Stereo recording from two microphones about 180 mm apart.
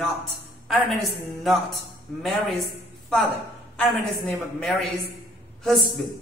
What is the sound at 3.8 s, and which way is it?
Mantra, centre (ahead or behind).